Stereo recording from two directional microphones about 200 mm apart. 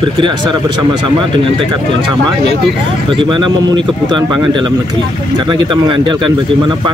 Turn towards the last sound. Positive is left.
turn(degrees=-25)  # may be behind; listen again after turning